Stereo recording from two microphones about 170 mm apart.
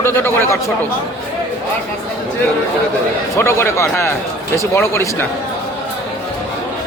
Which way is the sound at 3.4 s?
15° left (ahead or behind).